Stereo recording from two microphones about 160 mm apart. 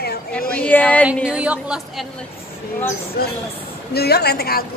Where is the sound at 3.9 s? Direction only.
85° left.